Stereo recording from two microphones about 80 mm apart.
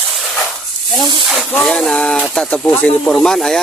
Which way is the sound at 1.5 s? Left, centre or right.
Centre.